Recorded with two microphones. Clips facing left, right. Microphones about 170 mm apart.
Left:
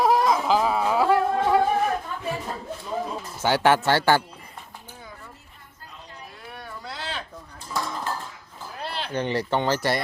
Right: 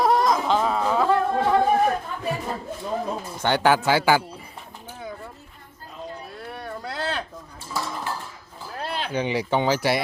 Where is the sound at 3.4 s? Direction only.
5° left (ahead or behind).